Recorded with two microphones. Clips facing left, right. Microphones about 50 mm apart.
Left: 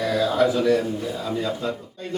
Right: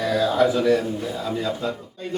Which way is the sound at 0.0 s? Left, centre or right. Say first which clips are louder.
Right 1 dB; centre.